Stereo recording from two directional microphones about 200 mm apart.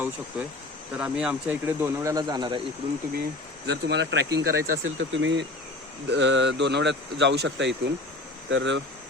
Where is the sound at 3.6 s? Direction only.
60° right (ahead or behind).